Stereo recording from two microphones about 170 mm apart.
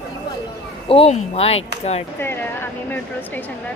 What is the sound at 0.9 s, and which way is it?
Speech, 35° left (ahead or behind).